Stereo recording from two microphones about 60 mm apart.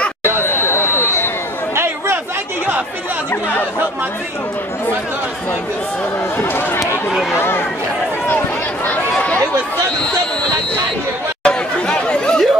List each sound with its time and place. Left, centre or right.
0.2 s chatter: left
6.3 s speech: left
6.8 s a sound: centre
7.3 s speech: left
11.4 s chatter: centre